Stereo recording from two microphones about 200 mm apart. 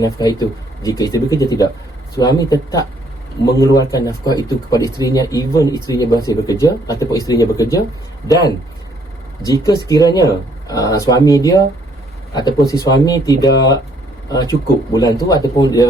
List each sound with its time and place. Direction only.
0.0 s speech: 20° left (ahead or behind)
9.4 s speech: 15° left (ahead or behind)